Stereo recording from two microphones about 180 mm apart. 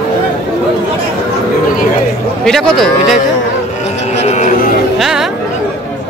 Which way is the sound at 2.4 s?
5° left (ahead or behind).